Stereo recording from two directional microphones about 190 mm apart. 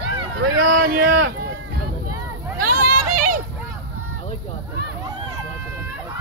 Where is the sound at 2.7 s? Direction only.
50° right (ahead or behind).